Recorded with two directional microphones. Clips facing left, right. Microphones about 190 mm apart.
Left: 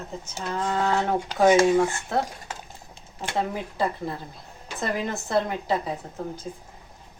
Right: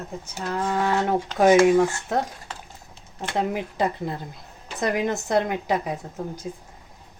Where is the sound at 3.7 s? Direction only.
20° right (ahead or behind).